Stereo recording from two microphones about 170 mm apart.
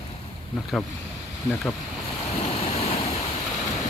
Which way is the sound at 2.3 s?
40° left (ahead or behind).